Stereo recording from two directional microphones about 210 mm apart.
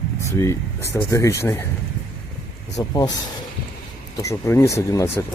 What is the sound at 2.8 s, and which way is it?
Speech, 15° left (ahead or behind).